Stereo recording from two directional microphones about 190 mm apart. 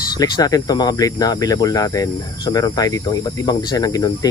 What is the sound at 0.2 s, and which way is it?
Speech, 20° left (ahead or behind).